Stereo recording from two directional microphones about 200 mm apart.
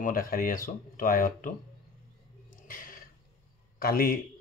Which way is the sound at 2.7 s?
45° left (ahead or behind).